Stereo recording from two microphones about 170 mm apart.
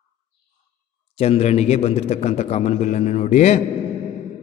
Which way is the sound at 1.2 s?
40° left (ahead or behind).